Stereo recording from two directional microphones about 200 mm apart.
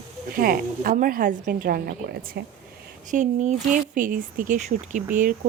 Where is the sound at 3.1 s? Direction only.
40° right (ahead or behind).